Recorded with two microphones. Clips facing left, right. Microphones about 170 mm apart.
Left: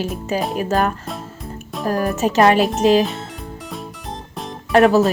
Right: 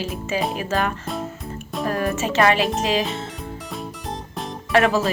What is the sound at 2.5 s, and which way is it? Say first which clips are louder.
Speech: left 6 dB; centre (ahead or behind).